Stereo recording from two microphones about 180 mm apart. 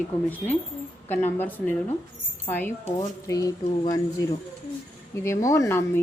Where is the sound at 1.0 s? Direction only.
10° left (ahead or behind).